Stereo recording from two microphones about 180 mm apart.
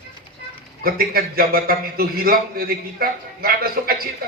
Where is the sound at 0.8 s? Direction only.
55° right (ahead or behind).